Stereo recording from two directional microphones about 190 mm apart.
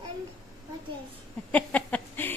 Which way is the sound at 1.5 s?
10° left (ahead or behind).